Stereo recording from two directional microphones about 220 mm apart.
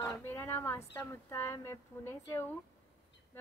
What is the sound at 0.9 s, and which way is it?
Speech, 10° left (ahead or behind).